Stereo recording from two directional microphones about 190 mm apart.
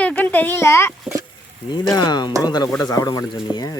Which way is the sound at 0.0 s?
5° left (ahead or behind).